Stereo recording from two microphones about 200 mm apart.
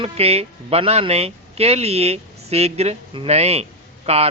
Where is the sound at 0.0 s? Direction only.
30° right (ahead or behind).